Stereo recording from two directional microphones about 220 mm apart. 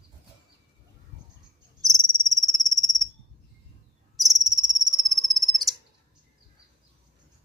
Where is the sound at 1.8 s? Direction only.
Centre (ahead or behind).